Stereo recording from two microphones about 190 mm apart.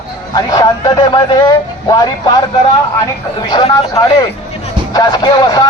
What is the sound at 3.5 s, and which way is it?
A man's voice, 20° left (ahead or behind).